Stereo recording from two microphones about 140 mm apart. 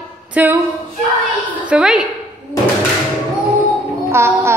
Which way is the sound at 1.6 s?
5° right (ahead or behind).